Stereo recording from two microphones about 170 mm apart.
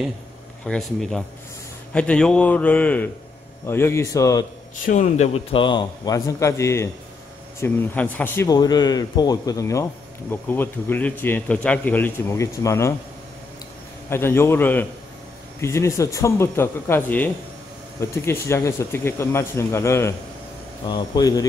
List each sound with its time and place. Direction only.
0.7 s speech: centre (ahead or behind); by 4.5 s 20° left (ahead or behind)
4.8 s speech: 45° left (ahead or behind)
5.6 s speech: 25° left (ahead or behind); by 8.5 s 10° left (ahead or behind)
8.5 s speech: 25° left (ahead or behind)
14.0 s speech: 15° left (ahead or behind)